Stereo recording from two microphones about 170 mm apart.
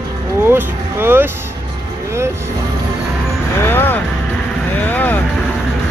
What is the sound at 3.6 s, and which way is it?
Music, 15° left (ahead or behind).